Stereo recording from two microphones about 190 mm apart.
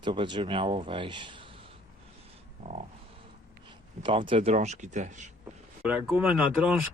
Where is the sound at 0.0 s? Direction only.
25° right (ahead or behind).